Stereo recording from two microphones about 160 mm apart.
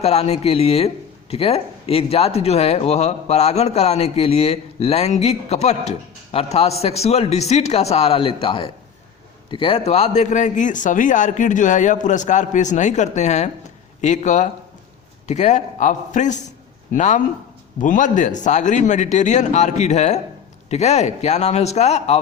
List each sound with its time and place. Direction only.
0.0 s a man's voice: 40° left (ahead or behind)